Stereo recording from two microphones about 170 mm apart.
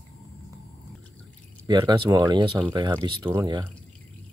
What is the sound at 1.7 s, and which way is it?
Speech, 25° right (ahead or behind).